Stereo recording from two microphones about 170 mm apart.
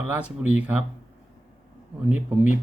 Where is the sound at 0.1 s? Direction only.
10° right (ahead or behind).